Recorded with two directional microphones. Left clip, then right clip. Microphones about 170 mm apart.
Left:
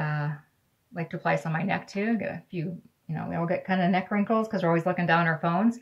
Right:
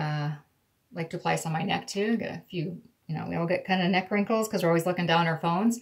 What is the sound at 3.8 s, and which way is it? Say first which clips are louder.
Speech: even; 45° left (ahead or behind).